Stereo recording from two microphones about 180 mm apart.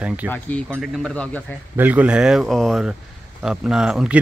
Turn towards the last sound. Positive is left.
turn(degrees=-5)  # may be behind; listen again after turning